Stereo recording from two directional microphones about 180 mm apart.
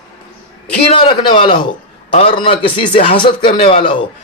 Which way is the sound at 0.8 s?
30° left (ahead or behind).